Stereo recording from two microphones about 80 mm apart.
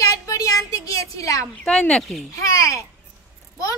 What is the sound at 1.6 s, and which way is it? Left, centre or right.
Speech, centre.